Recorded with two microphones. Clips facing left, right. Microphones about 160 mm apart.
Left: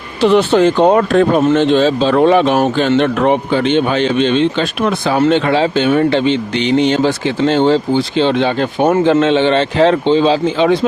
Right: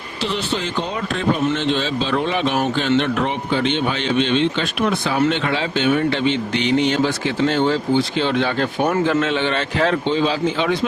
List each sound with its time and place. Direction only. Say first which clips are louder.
0.2 s speech: left 14 dB; 55° left (ahead or behind); by 10.8 s 30° left (ahead or behind)